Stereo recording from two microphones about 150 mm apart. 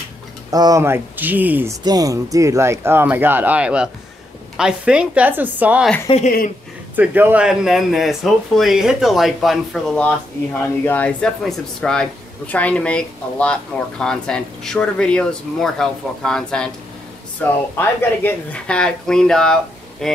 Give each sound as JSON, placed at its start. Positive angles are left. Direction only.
{"t": 0.5, "sound": "speech", "side_deg": -25}
{"t": 1.9, "sound": "speech", "side_deg": -25}
{"t": 6.2, "sound": "speech", "side_deg": 65}
{"t": 7.0, "sound": "speech", "side_deg": -10}